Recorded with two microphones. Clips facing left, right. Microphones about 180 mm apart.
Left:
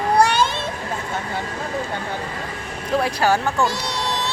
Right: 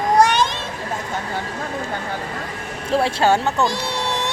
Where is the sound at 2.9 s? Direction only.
25° right (ahead or behind).